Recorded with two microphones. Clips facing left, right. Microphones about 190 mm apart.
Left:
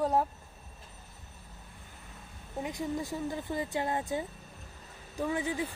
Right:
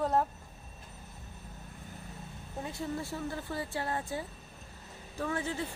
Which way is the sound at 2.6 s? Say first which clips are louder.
Left 3 dB; 15° left (ahead or behind).